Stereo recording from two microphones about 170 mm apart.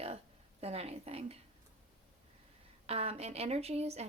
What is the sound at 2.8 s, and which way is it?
Speech, 35° right (ahead or behind).